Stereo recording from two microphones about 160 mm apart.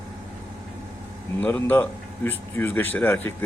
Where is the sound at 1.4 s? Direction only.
10° left (ahead or behind).